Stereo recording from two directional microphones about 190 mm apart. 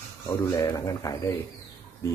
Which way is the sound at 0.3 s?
20° left (ahead or behind).